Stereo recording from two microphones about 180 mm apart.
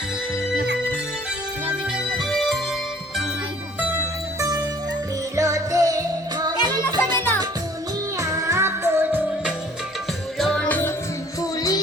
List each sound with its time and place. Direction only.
2.0 s music: centre (ahead or behind)
3.8 s music: 15° right (ahead or behind)
8.2 s music: 15° right (ahead or behind)
10.3 s music: centre (ahead or behind); by 11.8 s 20° left (ahead or behind)